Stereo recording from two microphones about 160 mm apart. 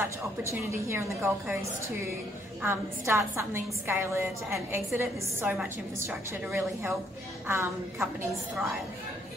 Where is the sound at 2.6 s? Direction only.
15° right (ahead or behind).